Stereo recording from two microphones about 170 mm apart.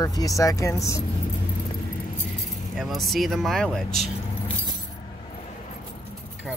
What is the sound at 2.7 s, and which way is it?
Speech, centre (ahead or behind).